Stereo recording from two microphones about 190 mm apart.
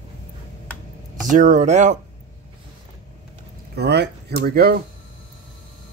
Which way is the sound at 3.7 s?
60° right (ahead or behind).